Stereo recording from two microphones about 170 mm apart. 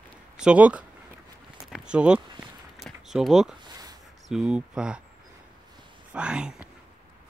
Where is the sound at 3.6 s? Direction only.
20° right (ahead or behind).